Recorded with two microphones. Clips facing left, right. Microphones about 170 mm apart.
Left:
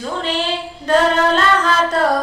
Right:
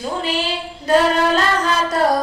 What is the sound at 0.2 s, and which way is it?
Child singing, 10° right (ahead or behind).